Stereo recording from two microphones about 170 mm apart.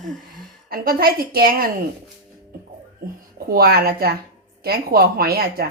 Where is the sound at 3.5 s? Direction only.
65° right (ahead or behind).